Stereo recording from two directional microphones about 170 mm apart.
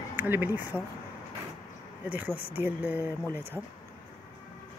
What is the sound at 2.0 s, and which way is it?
Speech, 10° right (ahead or behind).